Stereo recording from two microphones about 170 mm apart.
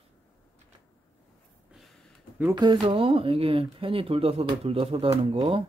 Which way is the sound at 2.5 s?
30° right (ahead or behind).